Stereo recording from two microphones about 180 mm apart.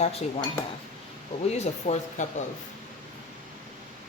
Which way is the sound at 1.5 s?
40° left (ahead or behind).